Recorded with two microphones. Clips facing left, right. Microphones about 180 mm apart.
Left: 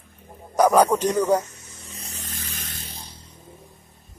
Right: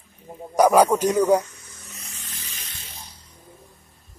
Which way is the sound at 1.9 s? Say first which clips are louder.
Left 6 dB; 35° left (ahead or behind).